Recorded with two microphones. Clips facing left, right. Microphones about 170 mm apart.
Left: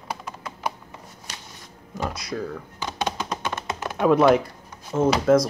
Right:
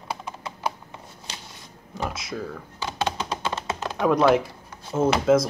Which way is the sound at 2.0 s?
Centre (ahead or behind).